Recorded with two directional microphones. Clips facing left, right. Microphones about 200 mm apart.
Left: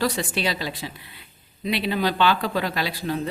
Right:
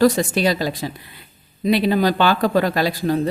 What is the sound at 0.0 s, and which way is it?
Speech, 45° right (ahead or behind).